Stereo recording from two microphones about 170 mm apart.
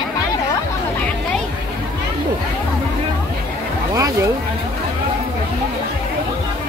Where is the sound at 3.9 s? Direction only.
20° right (ahead or behind).